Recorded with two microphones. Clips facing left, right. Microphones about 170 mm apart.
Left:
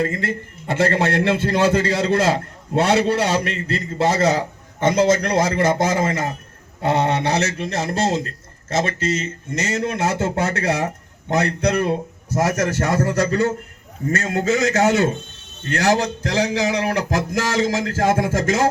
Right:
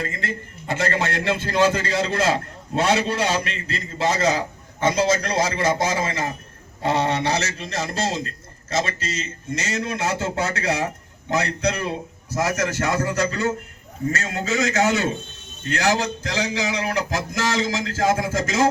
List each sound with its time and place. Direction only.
0.1 s a man's voice: 60° left (ahead or behind)